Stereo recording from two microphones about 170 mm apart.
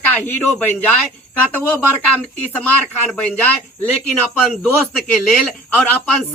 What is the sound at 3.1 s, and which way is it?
A woman's voice, 10° left (ahead or behind).